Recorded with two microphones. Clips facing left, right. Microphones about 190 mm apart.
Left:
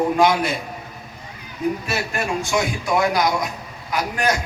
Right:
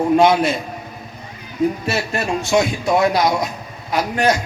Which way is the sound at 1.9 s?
25° right (ahead or behind).